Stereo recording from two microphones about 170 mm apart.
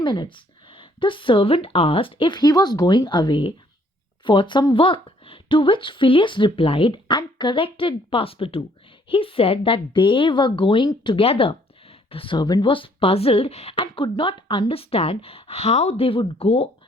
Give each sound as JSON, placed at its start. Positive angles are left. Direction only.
{"t": 0.0, "sound": "a woman's voice", "side_deg": 25}